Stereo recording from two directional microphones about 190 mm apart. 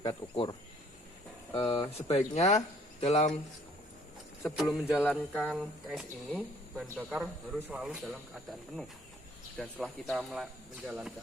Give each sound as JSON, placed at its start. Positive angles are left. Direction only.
{"t": 0.0, "sound": "speech", "side_deg": 25}
{"t": 1.5, "sound": "speech", "side_deg": 30}
{"t": 4.4, "sound": "a man's voice", "side_deg": 0}